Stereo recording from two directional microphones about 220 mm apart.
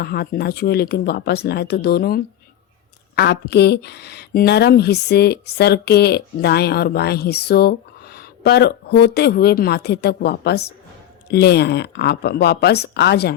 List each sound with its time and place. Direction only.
0.0 s speech: 45° left (ahead or behind)